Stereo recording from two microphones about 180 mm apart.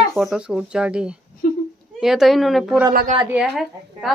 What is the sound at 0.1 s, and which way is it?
A woman's voice, centre (ahead or behind).